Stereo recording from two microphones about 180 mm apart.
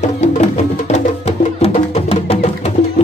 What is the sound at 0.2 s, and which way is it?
Music, 35° left (ahead or behind).